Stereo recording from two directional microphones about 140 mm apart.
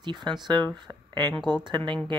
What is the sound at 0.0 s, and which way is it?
Speech, 30° right (ahead or behind).